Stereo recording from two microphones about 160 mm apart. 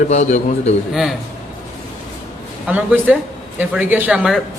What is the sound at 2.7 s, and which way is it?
Speech, 10° right (ahead or behind).